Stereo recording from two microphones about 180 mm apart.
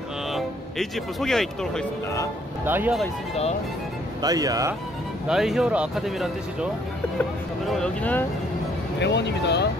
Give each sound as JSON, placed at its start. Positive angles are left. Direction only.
{"t": 0.3, "sound": "speech", "side_deg": 0}
{"t": 2.6, "sound": "speech", "side_deg": -10}
{"t": 4.2, "sound": "speech", "side_deg": -20}
{"t": 5.3, "sound": "speech", "side_deg": 0}
{"t": 7.7, "sound": "speech", "side_deg": 5}
{"t": 9.0, "sound": "speech", "side_deg": 75}